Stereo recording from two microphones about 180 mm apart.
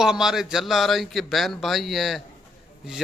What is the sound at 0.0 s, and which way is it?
Speech, 5° right (ahead or behind).